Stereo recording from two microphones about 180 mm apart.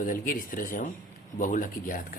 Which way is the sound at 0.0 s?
50° left (ahead or behind).